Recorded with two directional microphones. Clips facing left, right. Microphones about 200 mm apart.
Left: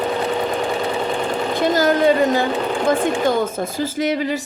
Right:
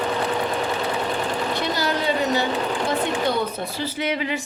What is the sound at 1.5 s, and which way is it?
Speech, 45° left (ahead or behind).